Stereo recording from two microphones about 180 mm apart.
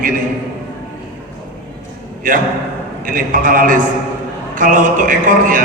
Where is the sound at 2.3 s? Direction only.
50° right (ahead or behind).